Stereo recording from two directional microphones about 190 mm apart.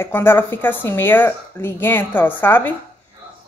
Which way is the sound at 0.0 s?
10° left (ahead or behind).